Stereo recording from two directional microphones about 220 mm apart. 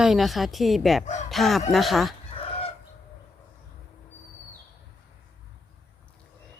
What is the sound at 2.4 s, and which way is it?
Chicken, 25° left (ahead or behind).